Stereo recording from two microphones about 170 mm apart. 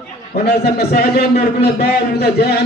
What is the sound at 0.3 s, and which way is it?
A man's voice, 70° left (ahead or behind).